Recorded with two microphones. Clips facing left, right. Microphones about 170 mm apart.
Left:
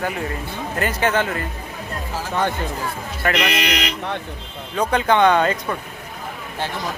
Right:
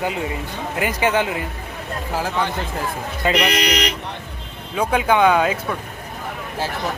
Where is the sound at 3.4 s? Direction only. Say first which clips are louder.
Right 2 dB; 40° right (ahead or behind).